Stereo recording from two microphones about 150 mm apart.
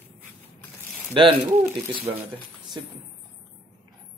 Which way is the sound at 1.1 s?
35° right (ahead or behind).